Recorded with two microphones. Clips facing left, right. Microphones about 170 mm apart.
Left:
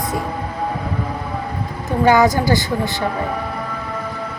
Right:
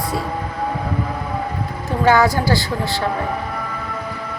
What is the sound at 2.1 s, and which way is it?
Speech, 15° left (ahead or behind).